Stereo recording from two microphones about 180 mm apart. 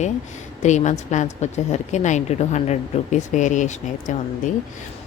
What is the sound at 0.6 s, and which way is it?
A woman's voice, 40° left (ahead or behind).